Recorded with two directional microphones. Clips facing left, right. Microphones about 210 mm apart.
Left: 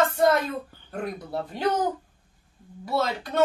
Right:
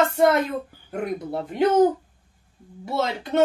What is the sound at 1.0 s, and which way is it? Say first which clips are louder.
Speech: right 3 dB; 20° right (ahead or behind).